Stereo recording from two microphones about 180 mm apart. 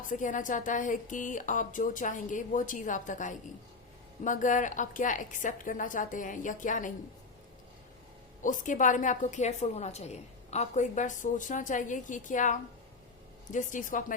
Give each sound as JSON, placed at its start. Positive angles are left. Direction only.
{"t": 0.0, "sound": "a woman's voice", "side_deg": 45}
{"t": 8.4, "sound": "a woman's voice", "side_deg": 45}